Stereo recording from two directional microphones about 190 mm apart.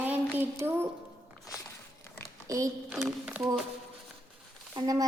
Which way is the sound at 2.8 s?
5° right (ahead or behind).